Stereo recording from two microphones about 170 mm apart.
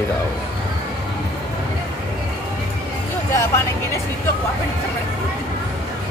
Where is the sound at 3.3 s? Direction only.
15° left (ahead or behind).